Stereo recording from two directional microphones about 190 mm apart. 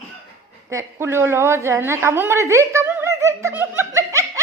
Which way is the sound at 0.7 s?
15° right (ahead or behind).